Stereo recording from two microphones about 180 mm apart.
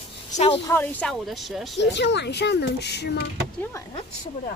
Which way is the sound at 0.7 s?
10° left (ahead or behind).